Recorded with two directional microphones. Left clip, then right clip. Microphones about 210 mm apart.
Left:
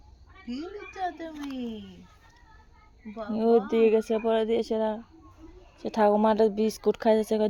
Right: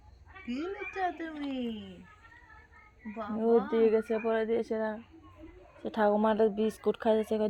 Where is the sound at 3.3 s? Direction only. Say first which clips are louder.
Left 4 dB; 30° left (ahead or behind).